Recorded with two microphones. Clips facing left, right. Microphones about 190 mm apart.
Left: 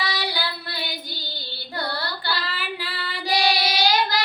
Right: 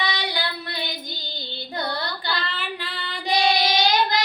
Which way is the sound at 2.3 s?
5° left (ahead or behind).